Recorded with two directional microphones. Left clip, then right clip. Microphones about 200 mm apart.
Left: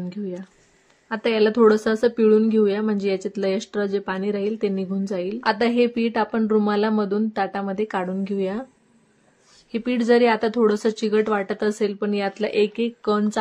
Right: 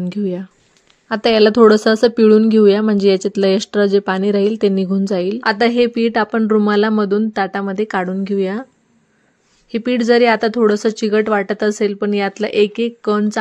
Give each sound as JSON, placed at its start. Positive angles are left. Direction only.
{"t": 0.1, "sound": "a woman's voice", "side_deg": -40}
{"t": 9.7, "sound": "speech", "side_deg": -30}